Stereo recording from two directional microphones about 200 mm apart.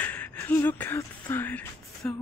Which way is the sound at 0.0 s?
5° left (ahead or behind).